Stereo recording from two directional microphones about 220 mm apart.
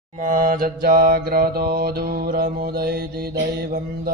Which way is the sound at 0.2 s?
35° right (ahead or behind).